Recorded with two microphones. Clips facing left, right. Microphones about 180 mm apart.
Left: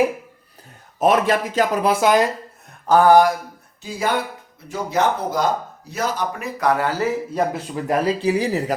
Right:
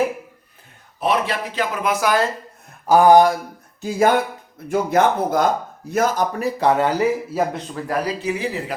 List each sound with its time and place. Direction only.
0.9 s speech: 45° left (ahead or behind); by 2.3 s 20° left (ahead or behind)
2.6 s a sound: 10° right (ahead or behind)
3.8 s speech: 45° right (ahead or behind)
6.4 s speech: 25° right (ahead or behind)
7.3 s a man's voice: 5° left (ahead or behind)
7.9 s speech: 30° left (ahead or behind)